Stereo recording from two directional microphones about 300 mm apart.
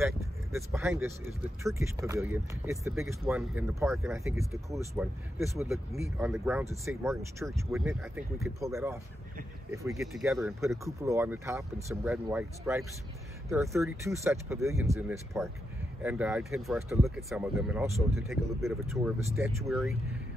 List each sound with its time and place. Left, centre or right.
0.0 s speech: centre